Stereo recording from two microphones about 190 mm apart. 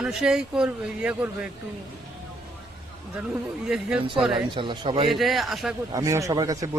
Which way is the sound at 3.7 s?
5° right (ahead or behind).